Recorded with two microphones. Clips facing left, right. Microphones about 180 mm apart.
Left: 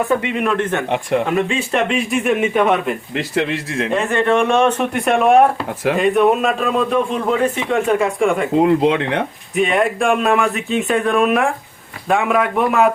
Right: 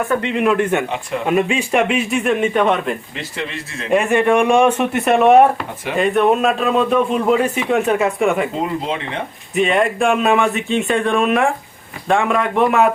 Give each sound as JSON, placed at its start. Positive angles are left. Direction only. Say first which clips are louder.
{"t": 0.2, "sound": "speech", "louder": "right 1 dB", "side_deg": 10}
{"t": 0.4, "sound": "speech", "louder": "right 2 dB", "side_deg": -10}
{"t": 3.3, "sound": "a man's voice", "louder": "left 8 dB", "side_deg": 90}
{"t": 3.9, "sound": "speech", "louder": "right 3 dB", "side_deg": -15}
{"t": 8.6, "sound": "speech", "louder": "left 8 dB", "side_deg": 75}
{"t": 9.6, "sound": "speech", "louder": "even", "side_deg": 0}